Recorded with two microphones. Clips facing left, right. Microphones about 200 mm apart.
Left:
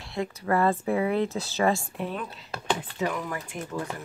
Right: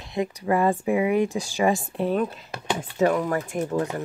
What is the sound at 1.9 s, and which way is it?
Speech, 40° right (ahead or behind).